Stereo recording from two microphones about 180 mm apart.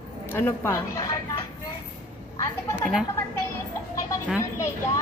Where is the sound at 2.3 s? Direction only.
15° left (ahead or behind).